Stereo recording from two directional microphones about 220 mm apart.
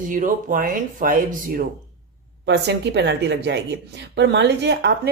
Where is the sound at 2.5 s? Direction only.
50° right (ahead or behind).